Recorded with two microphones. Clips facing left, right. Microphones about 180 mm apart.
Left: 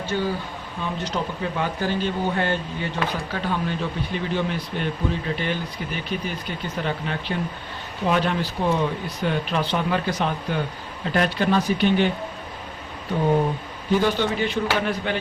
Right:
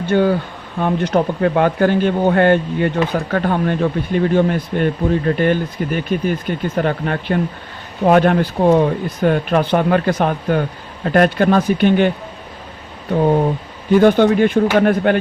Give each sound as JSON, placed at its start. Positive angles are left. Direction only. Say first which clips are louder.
{"t": 0.0, "sound": "speech", "louder": "right 10 dB", "side_deg": -60}
{"t": 13.9, "sound": "speech", "louder": "right 10 dB", "side_deg": -55}